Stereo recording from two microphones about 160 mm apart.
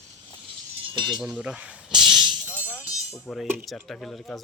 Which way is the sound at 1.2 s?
5° right (ahead or behind).